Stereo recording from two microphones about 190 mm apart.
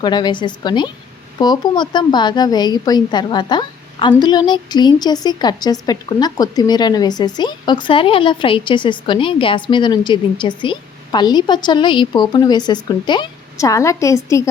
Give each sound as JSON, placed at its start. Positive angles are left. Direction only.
{"t": 0.0, "sound": "a woman's voice", "side_deg": 25}